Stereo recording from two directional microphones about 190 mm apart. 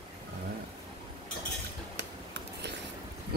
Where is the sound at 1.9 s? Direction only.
65° right (ahead or behind).